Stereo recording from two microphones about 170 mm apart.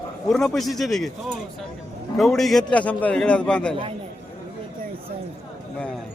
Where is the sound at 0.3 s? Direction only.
Centre (ahead or behind).